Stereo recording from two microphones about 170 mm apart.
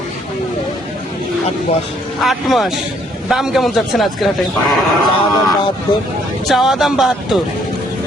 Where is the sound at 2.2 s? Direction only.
Centre (ahead or behind).